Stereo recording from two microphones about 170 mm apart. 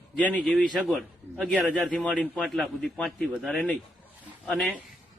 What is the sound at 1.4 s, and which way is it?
Speech, 5° right (ahead or behind).